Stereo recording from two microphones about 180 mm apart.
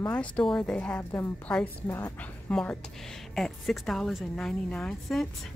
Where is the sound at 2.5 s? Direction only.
5° left (ahead or behind).